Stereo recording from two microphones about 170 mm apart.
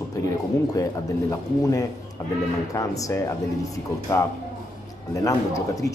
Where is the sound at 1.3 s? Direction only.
20° left (ahead or behind).